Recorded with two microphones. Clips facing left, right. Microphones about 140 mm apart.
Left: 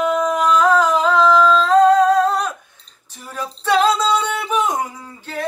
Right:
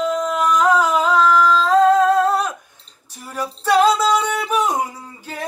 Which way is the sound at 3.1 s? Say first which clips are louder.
Right 2 dB; 10° right (ahead or behind).